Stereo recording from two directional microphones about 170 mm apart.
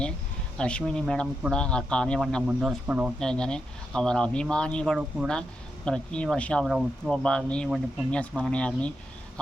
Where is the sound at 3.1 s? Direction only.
5° left (ahead or behind).